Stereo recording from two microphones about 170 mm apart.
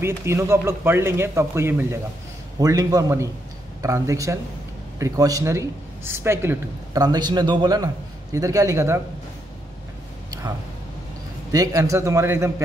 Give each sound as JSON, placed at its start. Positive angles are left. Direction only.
{"t": 0.0, "sound": "speech", "side_deg": -15}
{"t": 11.5, "sound": "speech", "side_deg": -20}